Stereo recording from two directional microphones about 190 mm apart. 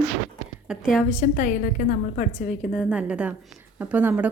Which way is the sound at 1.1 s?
45° left (ahead or behind).